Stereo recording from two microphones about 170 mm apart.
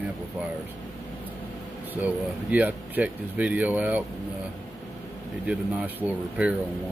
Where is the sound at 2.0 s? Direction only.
10° right (ahead or behind).